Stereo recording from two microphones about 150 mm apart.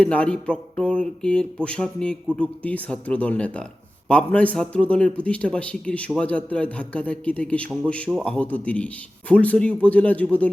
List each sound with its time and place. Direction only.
0.0 s speech: 10° left (ahead or behind)